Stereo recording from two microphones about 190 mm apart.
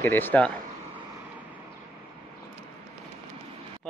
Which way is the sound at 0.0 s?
10° left (ahead or behind).